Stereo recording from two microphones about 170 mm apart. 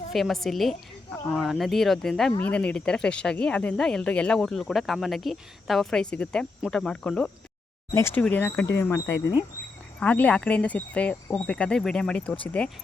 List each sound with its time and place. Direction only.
0.1 s speech: centre (ahead or behind)